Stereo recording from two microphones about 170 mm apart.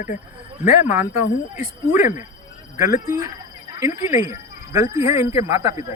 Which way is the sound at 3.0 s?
20° right (ahead or behind).